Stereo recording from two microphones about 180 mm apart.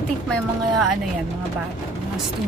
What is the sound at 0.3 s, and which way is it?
Speech, centre (ahead or behind).